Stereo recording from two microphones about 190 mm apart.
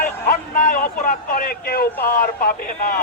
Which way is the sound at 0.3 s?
40° left (ahead or behind).